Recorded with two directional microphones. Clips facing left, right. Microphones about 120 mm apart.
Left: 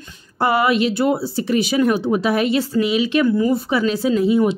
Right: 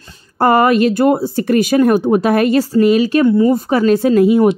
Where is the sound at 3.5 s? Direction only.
45° right (ahead or behind).